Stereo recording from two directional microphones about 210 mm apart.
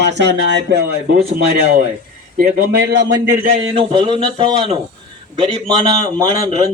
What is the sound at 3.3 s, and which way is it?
Speech, 35° right (ahead or behind).